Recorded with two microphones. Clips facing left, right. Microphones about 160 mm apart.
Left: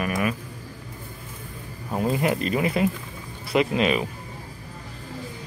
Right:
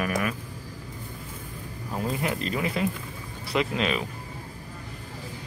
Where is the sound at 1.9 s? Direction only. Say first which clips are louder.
Left 5 dB; 25° left (ahead or behind).